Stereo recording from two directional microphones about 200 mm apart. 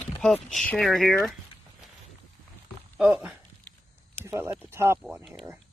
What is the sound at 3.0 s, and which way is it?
Speech, 5° right (ahead or behind).